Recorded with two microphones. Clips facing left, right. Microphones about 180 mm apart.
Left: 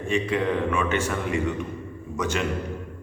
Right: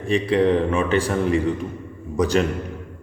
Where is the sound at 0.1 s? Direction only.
35° right (ahead or behind).